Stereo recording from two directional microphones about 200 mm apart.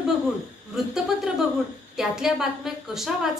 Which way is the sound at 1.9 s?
Centre (ahead or behind).